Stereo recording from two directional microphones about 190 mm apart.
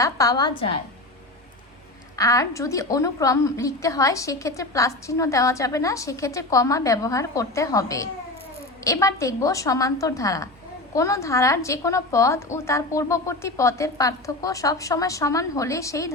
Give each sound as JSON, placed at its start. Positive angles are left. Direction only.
{"t": 0.0, "sound": "a woman's voice", "side_deg": 20}
{"t": 2.1, "sound": "a woman's voice", "side_deg": 15}